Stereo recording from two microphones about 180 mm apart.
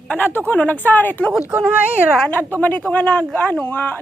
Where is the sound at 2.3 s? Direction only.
10° left (ahead or behind).